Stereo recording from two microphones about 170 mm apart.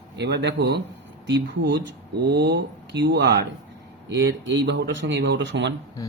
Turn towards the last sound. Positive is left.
turn(degrees=20)  # may be behind; listen again after turning